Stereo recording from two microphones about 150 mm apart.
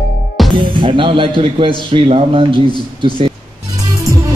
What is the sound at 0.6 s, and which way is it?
Music, 35° right (ahead or behind).